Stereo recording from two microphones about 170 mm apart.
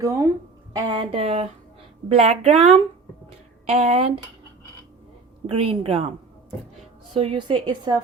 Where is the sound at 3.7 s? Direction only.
40° right (ahead or behind).